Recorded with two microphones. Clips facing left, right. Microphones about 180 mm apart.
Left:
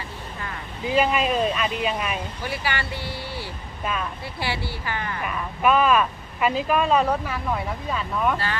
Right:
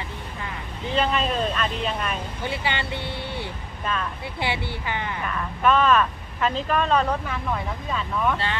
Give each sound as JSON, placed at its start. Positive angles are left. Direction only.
{"t": 0.8, "sound": "speech", "side_deg": 10}
{"t": 2.4, "sound": "speech", "side_deg": -20}
{"t": 3.8, "sound": "speech", "side_deg": 10}
{"t": 4.4, "sound": "speech", "side_deg": -20}
{"t": 5.2, "sound": "speech", "side_deg": 10}